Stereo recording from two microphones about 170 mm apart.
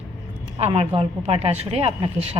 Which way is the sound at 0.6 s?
35° right (ahead or behind).